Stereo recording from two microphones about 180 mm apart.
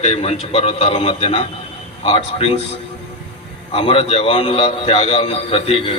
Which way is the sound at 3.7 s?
30° left (ahead or behind).